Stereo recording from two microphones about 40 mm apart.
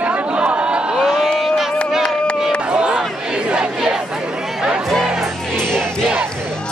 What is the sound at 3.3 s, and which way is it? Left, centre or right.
Speech, right.